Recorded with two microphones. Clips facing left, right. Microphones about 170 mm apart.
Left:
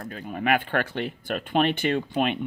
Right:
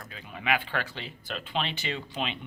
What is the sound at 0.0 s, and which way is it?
Speech, 50° left (ahead or behind).